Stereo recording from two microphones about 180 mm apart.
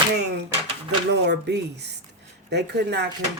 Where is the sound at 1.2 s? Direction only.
70° right (ahead or behind).